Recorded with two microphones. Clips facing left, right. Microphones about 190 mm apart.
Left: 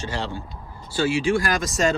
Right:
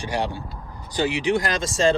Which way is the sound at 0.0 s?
15° right (ahead or behind).